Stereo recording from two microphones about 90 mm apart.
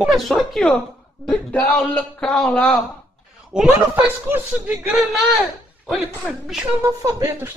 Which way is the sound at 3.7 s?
20° right (ahead or behind).